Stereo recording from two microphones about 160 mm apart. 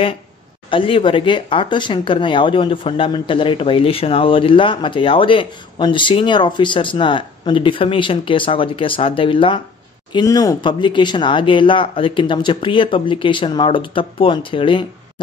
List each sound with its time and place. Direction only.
0.7 s speech: 35° left (ahead or behind)
10.1 s speech: 20° left (ahead or behind)